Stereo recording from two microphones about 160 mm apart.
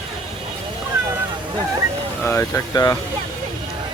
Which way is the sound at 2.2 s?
15° left (ahead or behind).